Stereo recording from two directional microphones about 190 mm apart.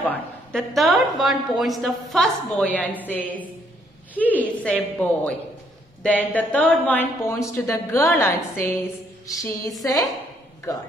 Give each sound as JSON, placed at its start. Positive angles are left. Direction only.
{"t": 0.0, "sound": "a woman's voice", "side_deg": 5}
{"t": 9.3, "sound": "music", "side_deg": 15}